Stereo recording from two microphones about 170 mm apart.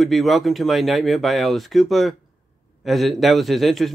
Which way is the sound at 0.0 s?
Centre (ahead or behind).